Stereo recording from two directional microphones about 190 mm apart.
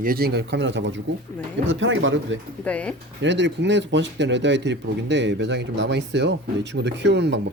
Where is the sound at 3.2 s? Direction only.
70° right (ahead or behind).